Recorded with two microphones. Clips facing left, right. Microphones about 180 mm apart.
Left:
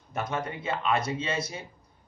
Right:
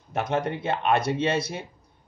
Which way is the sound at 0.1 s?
70° right (ahead or behind).